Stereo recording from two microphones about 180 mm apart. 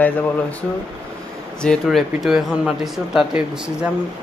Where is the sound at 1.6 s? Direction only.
Centre (ahead or behind).